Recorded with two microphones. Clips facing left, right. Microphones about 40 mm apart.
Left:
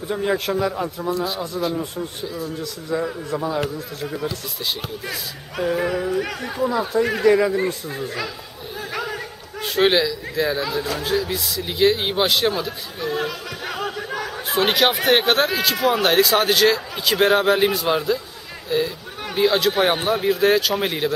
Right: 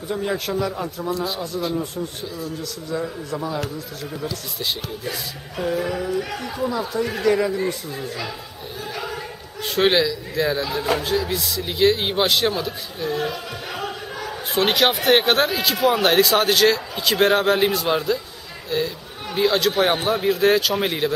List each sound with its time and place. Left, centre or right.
0.1 s speech: centre
0.5 s speech: left
1.0 s speech: centre
2.4 s a man's voice: left
5.8 s a man's voice: left
6.7 s speech: left
9.6 s speech: centre
14.5 s speech: centre